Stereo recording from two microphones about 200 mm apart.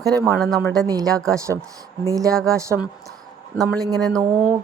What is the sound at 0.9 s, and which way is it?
Speech, 15° right (ahead or behind).